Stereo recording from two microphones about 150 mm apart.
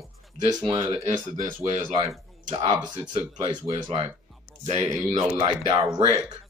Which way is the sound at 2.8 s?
35° right (ahead or behind).